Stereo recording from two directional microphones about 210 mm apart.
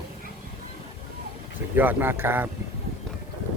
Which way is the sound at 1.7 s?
10° right (ahead or behind).